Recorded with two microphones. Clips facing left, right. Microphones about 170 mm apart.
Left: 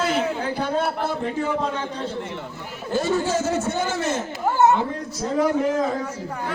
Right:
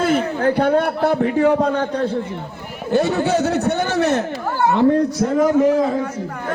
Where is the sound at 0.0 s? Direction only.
55° right (ahead or behind).